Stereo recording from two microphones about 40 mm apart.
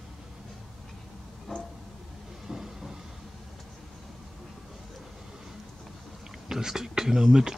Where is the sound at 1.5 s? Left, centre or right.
Centre.